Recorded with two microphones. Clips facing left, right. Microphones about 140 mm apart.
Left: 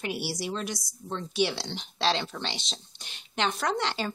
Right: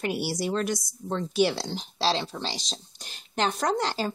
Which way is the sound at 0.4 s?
50° right (ahead or behind).